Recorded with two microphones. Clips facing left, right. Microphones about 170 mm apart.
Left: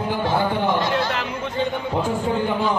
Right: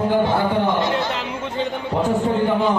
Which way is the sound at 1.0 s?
20° right (ahead or behind).